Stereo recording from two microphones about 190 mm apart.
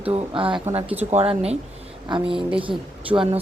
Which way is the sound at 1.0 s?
30° right (ahead or behind).